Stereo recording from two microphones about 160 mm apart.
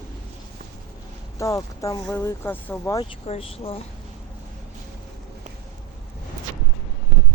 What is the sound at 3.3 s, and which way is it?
Speech, 40° left (ahead or behind).